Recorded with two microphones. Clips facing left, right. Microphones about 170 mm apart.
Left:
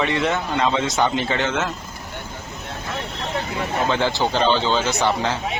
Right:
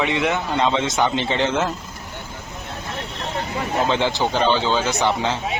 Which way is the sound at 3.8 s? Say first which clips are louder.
Left 2 dB; 20° right (ahead or behind).